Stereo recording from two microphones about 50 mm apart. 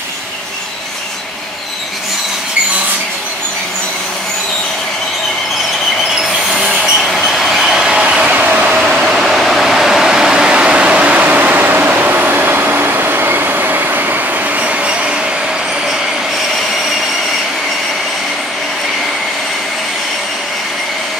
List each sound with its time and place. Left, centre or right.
6.7 s train: centre
7.8 s train: centre
8.3 s train: right
9.1 s a sound: centre; by 15.1 s right